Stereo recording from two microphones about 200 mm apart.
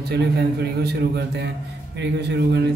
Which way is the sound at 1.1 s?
55° right (ahead or behind).